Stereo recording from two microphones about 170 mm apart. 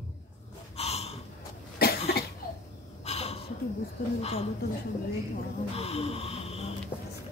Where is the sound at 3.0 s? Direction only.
35° left (ahead or behind).